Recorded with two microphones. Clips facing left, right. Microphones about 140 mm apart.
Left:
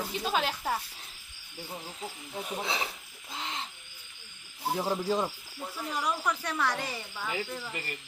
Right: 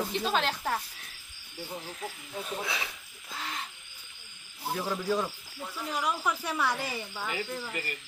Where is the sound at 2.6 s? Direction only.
30° left (ahead or behind).